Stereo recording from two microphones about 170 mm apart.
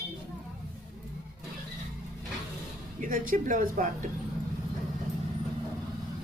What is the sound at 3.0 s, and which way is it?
Speech, 50° right (ahead or behind).